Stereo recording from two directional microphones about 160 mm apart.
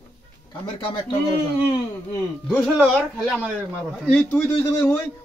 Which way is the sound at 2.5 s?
5° right (ahead or behind).